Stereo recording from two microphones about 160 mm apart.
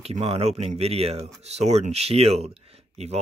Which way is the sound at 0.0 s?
40° right (ahead or behind).